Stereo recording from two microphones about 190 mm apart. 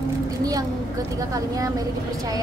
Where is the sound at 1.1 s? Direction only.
20° right (ahead or behind).